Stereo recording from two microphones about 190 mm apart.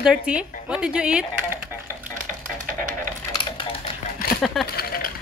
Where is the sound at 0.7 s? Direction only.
5° right (ahead or behind).